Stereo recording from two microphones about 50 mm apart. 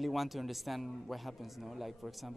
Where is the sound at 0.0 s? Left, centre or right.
Centre.